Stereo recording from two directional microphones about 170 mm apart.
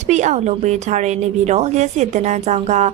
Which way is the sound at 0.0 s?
45° right (ahead or behind).